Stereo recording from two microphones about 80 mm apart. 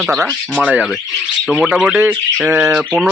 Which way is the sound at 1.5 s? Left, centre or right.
Centre.